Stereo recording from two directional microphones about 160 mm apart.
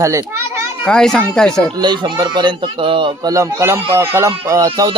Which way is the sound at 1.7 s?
30° right (ahead or behind).